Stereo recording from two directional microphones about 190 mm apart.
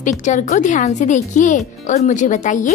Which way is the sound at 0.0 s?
40° left (ahead or behind).